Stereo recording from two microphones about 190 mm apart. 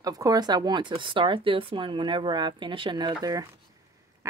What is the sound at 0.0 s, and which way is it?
Speech, 20° right (ahead or behind).